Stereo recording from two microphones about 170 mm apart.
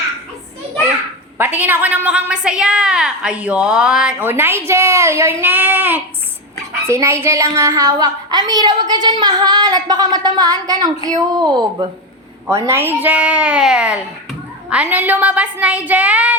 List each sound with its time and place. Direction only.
1.4 s a woman's voice: 10° right (ahead or behind)